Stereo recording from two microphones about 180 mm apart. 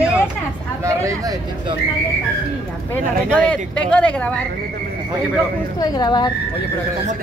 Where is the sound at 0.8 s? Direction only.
15° right (ahead or behind).